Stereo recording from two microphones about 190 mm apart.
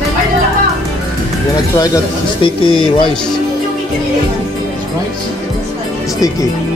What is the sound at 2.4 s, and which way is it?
Music, 25° left (ahead or behind).